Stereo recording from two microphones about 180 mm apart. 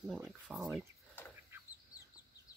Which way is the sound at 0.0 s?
Centre (ahead or behind).